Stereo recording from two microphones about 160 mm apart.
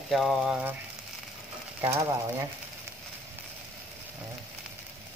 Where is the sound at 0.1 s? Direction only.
Centre (ahead or behind).